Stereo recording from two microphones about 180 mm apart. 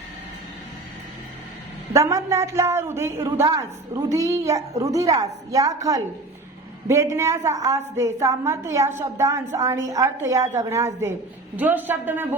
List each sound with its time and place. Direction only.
1.9 s a woman's voice: 15° right (ahead or behind)